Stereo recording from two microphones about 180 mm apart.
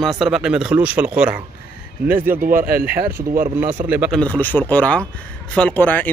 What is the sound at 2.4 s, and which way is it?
Speech, 50° right (ahead or behind).